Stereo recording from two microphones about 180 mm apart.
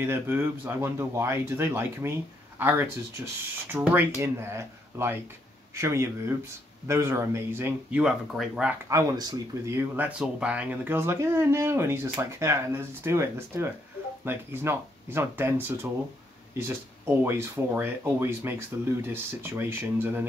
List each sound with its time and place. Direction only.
0.0 s speech: 15° right (ahead or behind)
8.8 s speech: 20° right (ahead or behind)